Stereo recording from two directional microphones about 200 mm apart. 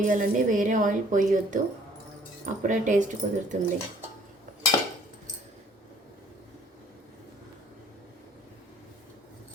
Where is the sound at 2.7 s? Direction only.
40° right (ahead or behind).